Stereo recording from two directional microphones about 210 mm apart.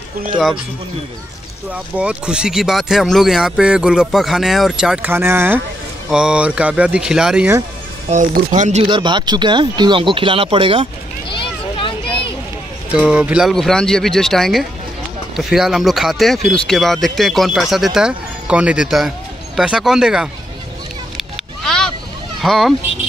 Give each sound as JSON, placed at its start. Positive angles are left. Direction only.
{"t": 1.7, "sound": "speech", "side_deg": -5}
{"t": 8.1, "sound": "speech", "side_deg": -35}
{"t": 8.8, "sound": "speech", "side_deg": -20}
{"t": 11.2, "sound": "a sound", "side_deg": 25}
{"t": 12.9, "sound": "speech", "side_deg": -5}
{"t": 21.2, "sound": "vehicle", "side_deg": 0}
{"t": 22.4, "sound": "speech", "side_deg": 0}